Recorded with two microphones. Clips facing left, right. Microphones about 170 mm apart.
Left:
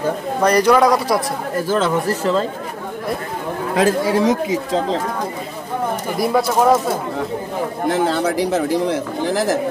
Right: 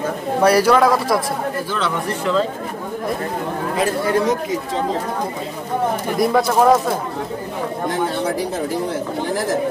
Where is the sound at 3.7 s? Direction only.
90° left.